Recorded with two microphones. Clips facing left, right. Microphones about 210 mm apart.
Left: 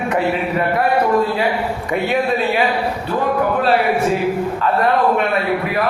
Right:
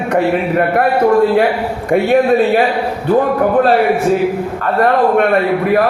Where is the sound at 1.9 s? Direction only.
50° right (ahead or behind).